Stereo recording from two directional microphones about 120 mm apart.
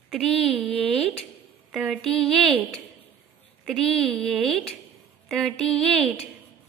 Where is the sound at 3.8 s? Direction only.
5° left (ahead or behind).